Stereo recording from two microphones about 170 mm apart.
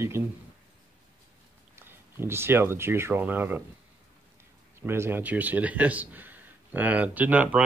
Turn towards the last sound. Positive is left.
turn(degrees=-10)  # may be behind; listen again after turning